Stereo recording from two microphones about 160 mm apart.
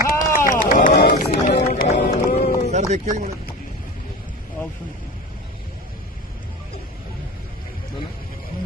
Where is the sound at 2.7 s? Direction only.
45° right (ahead or behind).